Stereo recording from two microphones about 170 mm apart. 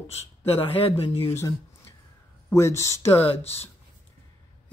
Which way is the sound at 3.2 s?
35° left (ahead or behind).